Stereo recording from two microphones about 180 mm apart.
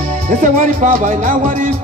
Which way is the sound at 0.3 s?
45° right (ahead or behind).